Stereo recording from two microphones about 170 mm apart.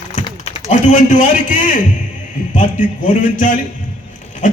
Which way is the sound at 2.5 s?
50° left (ahead or behind).